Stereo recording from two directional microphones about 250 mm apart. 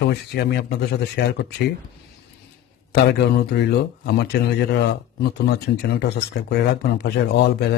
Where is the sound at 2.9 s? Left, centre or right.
Left.